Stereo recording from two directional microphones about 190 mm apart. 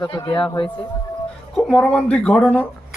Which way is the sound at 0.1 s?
25° left (ahead or behind).